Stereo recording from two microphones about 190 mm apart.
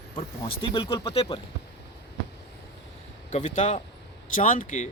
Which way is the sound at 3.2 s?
40° left (ahead or behind).